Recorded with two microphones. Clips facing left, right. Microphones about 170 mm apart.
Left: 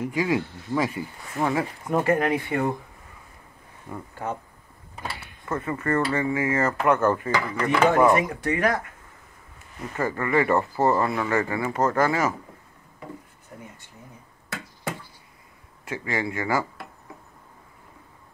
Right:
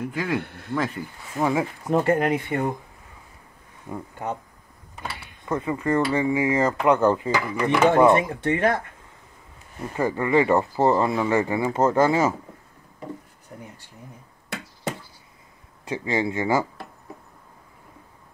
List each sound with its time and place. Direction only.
0.1 s speech: 10° left (ahead or behind)
0.4 s speech: 60° right (ahead or behind)
0.7 s speech: 10° left (ahead or behind)
1.3 s dishes: 15° right (ahead or behind)
2.0 s speech: 20° right (ahead or behind)
3.9 s speech: 20° right (ahead or behind)
5.4 s dishes: 15° right (ahead or behind)
7.9 s speech: 25° right (ahead or behind)
9.9 s speech: 15° right (ahead or behind)
15.8 s speech: 20° right (ahead or behind)